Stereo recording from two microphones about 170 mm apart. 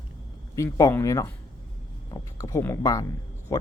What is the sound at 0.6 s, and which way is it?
Speech, 20° left (ahead or behind).